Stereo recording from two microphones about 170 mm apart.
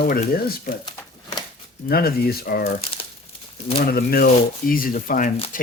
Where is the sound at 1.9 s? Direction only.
65° left (ahead or behind).